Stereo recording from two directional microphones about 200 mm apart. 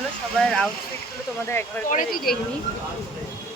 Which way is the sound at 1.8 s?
45° left (ahead or behind).